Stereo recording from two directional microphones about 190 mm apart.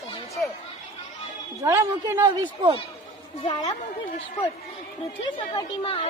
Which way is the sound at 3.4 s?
20° left (ahead or behind).